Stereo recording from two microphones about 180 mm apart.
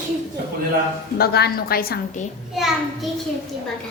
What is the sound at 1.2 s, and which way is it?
A woman's voice, 60° left (ahead or behind).